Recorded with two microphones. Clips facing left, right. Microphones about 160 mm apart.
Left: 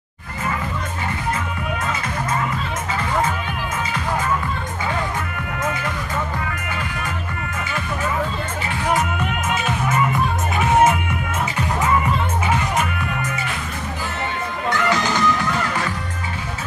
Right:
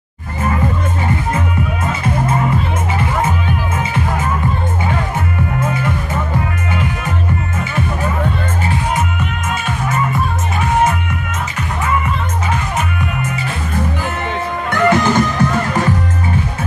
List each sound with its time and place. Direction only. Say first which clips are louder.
14.7 s music: right 7 dB; 55° right (ahead or behind)